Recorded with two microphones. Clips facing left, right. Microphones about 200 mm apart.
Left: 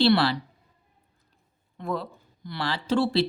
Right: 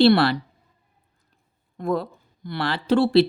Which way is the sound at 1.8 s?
50° right (ahead or behind).